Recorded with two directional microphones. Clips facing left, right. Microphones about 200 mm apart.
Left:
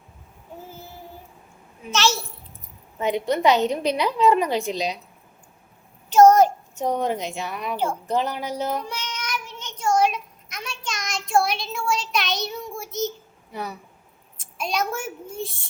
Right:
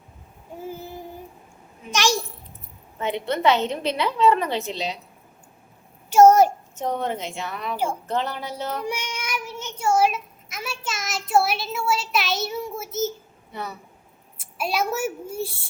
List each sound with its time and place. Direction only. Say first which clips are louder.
0.7 s child singing: right 6 dB; 15° right (ahead or behind)
1.9 s a sound: even; 15° right (ahead or behind)
3.0 s a woman's voice: left 2 dB; 15° left (ahead or behind)
6.1 s a sound: even; 10° right (ahead or behind)
6.7 s a woman's voice: left 3 dB; 15° left (ahead or behind)
8.8 s child singing: right 3 dB; 10° right (ahead or behind)
13.5 s a woman's voice: left 1 dB; 10° left (ahead or behind)
14.3 s a woman's voice: right 1 dB; 5° right (ahead or behind)